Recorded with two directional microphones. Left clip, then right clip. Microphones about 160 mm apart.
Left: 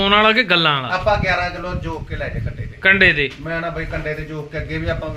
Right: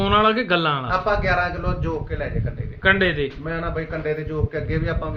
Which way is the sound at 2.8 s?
25° left (ahead or behind).